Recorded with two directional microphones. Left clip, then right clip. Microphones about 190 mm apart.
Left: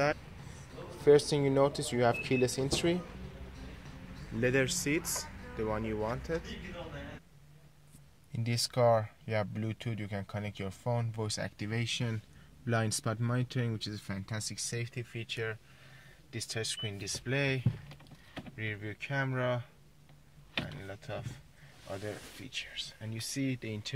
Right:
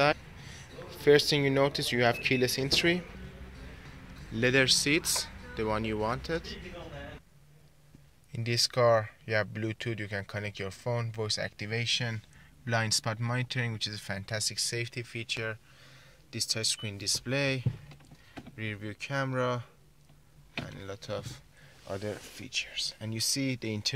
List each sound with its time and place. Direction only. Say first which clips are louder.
0.5 s speech: right 2 dB; centre (ahead or behind)
4.4 s speech: right 6 dB; 10° right (ahead or behind)
5.8 s speech: right 3 dB; 20° right (ahead or behind)
6.2 s speech: right 2 dB; 10° right (ahead or behind)
8.3 s speech: right 6 dB; centre (ahead or behind)
20.7 s power windows: right 3 dB; 20° right (ahead or behind)
21.9 s speech: right 4 dB; 30° right (ahead or behind)